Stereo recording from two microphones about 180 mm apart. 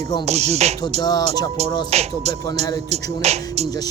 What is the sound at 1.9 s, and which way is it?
Speech, 35° right (ahead or behind).